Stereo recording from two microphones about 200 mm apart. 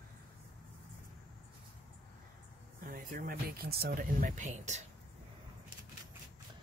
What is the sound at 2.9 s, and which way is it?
Speech, 45° right (ahead or behind).